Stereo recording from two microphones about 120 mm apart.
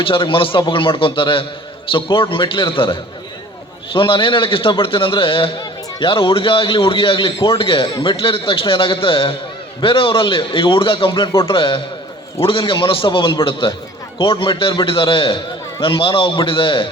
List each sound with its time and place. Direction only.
0.0 s a man's voice: 45° left (ahead or behind)